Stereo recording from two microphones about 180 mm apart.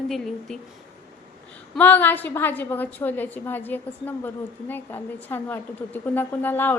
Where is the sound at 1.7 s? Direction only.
10° left (ahead or behind).